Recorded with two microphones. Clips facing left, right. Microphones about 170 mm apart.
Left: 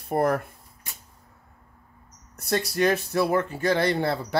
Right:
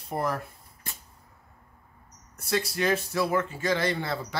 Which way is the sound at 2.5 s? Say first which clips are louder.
Left 3 dB; 45° left (ahead or behind).